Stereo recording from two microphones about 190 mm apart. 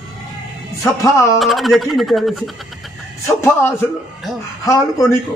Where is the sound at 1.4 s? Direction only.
Centre (ahead or behind).